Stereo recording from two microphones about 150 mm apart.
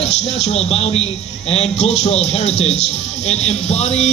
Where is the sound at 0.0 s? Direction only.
45° left (ahead or behind).